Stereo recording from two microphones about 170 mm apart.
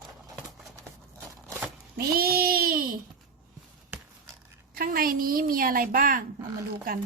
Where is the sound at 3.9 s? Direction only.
15° right (ahead or behind).